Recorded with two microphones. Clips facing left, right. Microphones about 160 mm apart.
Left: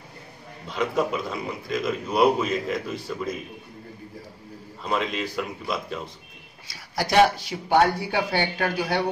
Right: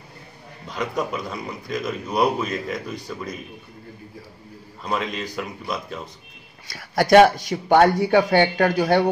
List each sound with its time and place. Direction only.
0.7 s a man's voice: centre (ahead or behind)
4.8 s a man's voice: centre (ahead or behind)
6.7 s a man's voice: 55° right (ahead or behind)